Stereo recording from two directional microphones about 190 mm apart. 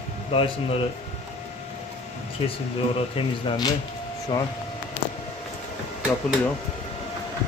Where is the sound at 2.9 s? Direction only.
30° left (ahead or behind).